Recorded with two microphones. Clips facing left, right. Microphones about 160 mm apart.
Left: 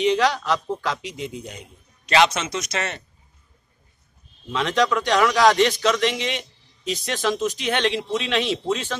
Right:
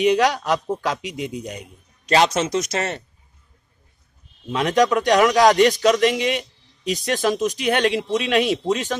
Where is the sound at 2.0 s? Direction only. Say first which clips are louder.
Right 2 dB; 40° right (ahead or behind).